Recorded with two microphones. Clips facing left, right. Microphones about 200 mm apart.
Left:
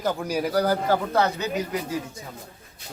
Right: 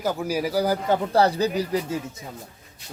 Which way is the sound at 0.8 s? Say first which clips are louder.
Right 2 dB; 30° right (ahead or behind).